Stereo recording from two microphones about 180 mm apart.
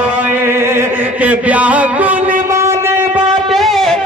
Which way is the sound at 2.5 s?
15° right (ahead or behind).